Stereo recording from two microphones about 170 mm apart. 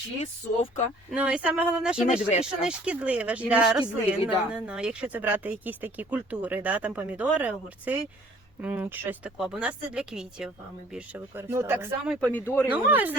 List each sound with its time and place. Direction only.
0.2 s speech: 40° left (ahead or behind)
1.1 s speech: 5° right (ahead or behind)
12.3 s speech: 10° left (ahead or behind)
12.7 s speech: 10° right (ahead or behind)